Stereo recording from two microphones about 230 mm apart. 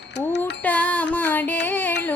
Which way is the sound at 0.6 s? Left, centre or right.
Centre.